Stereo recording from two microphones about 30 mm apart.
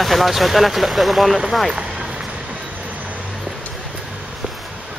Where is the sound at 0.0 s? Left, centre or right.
Centre.